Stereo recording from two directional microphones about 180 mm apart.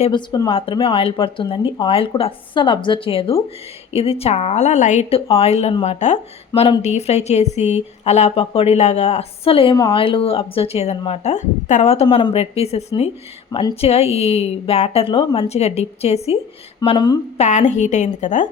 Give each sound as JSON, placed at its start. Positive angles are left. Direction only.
{"t": 0.1, "sound": "a woman's voice", "side_deg": 25}
{"t": 17.3, "sound": "a woman's voice", "side_deg": 40}